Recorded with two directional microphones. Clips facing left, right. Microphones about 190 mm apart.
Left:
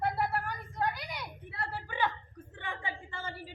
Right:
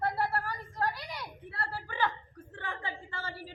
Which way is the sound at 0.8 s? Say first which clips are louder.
Even; centre (ahead or behind).